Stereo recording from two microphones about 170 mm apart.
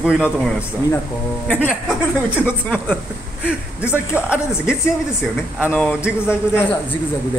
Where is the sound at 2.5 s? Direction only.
10° left (ahead or behind).